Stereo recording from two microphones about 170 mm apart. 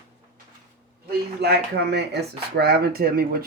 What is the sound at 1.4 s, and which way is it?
Speech, 75° right (ahead or behind).